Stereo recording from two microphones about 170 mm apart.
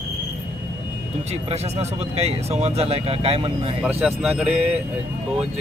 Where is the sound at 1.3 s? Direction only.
40° right (ahead or behind).